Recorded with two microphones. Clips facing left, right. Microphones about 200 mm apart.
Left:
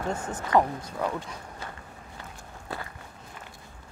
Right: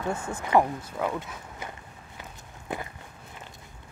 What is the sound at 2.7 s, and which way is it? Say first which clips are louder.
Walk: right 3 dB; 20° right (ahead or behind).